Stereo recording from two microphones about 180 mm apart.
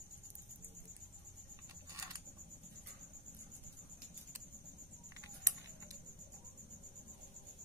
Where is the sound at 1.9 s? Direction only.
20° right (ahead or behind).